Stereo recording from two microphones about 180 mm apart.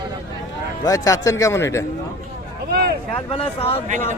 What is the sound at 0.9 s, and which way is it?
Speech, 20° left (ahead or behind).